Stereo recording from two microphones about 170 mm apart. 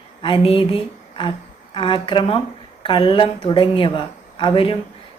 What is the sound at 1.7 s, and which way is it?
A woman's voice, 30° left (ahead or behind).